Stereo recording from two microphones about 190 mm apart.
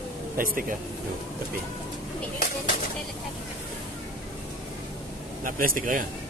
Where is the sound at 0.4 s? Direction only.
45° right (ahead or behind).